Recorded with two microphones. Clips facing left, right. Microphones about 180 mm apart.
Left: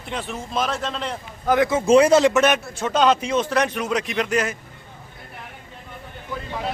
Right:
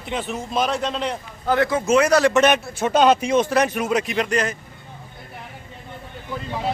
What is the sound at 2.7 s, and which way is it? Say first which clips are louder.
Speech: right 2 dB; 10° right (ahead or behind).